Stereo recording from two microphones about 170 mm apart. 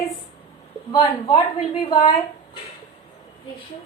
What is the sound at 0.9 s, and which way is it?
Speech, 25° left (ahead or behind).